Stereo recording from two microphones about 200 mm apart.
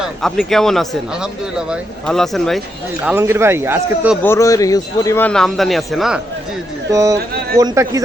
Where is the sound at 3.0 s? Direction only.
10° right (ahead or behind).